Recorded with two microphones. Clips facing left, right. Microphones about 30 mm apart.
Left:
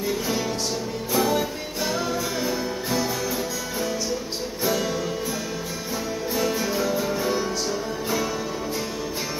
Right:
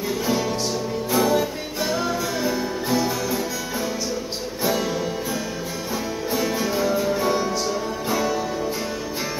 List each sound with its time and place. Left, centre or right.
1.1 s music: centre
6.3 s music: centre